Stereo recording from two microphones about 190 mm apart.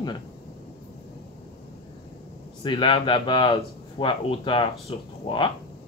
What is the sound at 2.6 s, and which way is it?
Speech, 25° left (ahead or behind).